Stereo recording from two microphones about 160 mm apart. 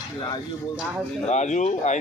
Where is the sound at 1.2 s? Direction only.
45° left (ahead or behind).